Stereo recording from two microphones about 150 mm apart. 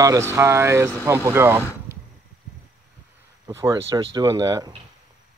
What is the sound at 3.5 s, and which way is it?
Speech, 20° right (ahead or behind).